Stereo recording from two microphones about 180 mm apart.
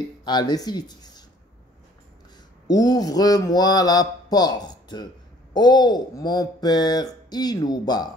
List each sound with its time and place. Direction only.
0.2 s speech: 25° left (ahead or behind)
2.7 s speech: 20° left (ahead or behind)